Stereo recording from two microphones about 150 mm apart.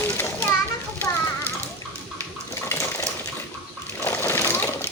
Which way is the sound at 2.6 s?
20° left (ahead or behind).